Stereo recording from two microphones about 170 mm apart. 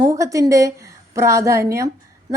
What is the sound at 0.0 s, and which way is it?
A woman's voice, 20° right (ahead or behind).